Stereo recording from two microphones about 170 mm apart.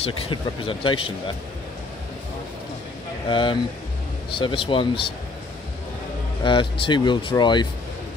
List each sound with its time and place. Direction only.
0.0 s speech: 30° left (ahead or behind)
3.3 s speech: 30° left (ahead or behind)
6.4 s speech: 30° left (ahead or behind)